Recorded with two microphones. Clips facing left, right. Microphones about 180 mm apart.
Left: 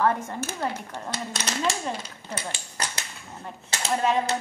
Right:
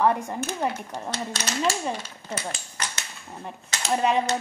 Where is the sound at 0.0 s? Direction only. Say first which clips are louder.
Right 2 dB; 15° right (ahead or behind).